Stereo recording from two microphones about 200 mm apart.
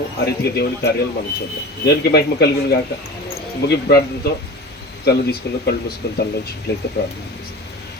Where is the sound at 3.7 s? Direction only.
55° left (ahead or behind).